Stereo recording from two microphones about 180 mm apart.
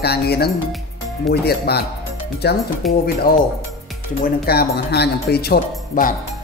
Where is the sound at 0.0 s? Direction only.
60° left (ahead or behind).